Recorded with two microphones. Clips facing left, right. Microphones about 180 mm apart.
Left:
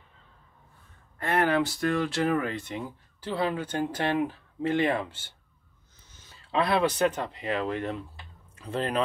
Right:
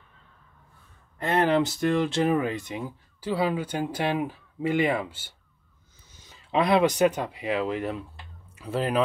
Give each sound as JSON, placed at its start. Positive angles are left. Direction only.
{"t": 1.2, "sound": "speech", "side_deg": -20}